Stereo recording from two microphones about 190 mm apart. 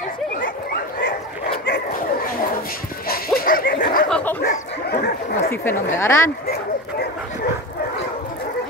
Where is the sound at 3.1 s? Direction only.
50° left (ahead or behind).